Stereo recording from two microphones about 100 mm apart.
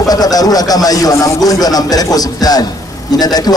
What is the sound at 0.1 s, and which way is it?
A man's voice, 40° left (ahead or behind).